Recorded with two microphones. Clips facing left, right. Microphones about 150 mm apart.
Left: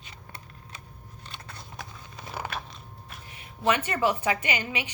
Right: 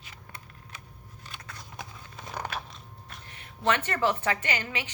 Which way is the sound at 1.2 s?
30° left (ahead or behind).